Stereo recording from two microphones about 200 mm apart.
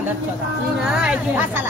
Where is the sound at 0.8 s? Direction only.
5° right (ahead or behind).